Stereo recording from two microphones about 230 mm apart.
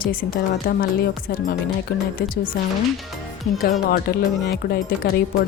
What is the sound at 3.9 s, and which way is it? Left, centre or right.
A woman's voice, left.